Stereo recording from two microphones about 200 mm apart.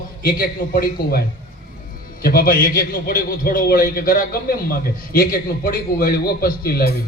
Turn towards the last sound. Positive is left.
turn(degrees=50)  # may be behind; listen again after turning